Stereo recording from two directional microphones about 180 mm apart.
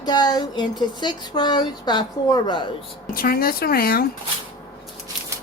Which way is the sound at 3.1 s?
55° left (ahead or behind).